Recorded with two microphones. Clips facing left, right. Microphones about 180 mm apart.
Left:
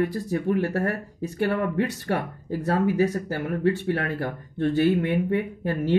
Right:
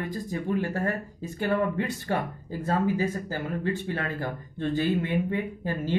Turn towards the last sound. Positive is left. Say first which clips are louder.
# left 5 dB
turn(degrees=65)  # may be behind; listen again after turning